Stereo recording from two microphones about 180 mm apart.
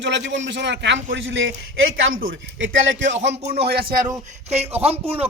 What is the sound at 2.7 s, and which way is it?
Speech, 90° right.